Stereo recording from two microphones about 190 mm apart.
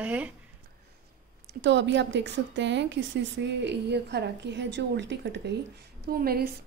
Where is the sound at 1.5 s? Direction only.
70° right (ahead or behind).